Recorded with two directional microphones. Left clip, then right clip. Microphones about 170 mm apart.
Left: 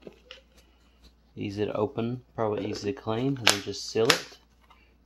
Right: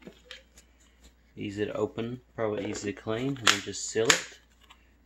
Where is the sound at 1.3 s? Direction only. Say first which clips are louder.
Left 2 dB; 40° left (ahead or behind).